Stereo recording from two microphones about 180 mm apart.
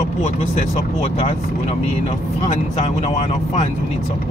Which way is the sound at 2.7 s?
35° left (ahead or behind).